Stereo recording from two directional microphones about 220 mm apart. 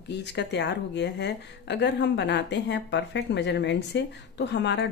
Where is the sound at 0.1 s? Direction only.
50° left (ahead or behind).